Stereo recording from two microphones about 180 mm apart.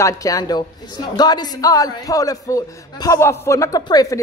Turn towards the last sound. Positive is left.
turn(degrees=20)  # may be behind; listen again after turning